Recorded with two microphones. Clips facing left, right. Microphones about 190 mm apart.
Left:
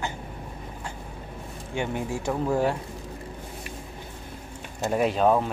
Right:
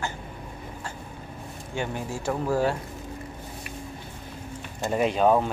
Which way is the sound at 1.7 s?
15° left (ahead or behind).